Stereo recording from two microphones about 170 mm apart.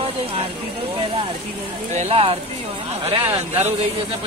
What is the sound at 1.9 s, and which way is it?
Speech, 40° right (ahead or behind).